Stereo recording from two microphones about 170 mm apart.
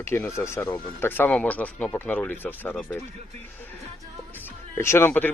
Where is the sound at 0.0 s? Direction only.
15° left (ahead or behind).